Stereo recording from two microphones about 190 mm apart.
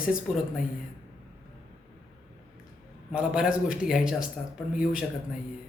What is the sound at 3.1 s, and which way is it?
A woman's voice, 5° right (ahead or behind).